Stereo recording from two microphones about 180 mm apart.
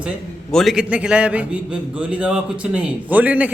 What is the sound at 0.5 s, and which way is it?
A man's voice, centre (ahead or behind).